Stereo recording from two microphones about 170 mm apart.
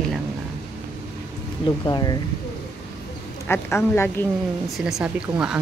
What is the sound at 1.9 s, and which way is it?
Speech, 25° left (ahead or behind).